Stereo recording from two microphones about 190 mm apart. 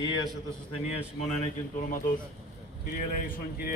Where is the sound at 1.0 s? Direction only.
35° left (ahead or behind).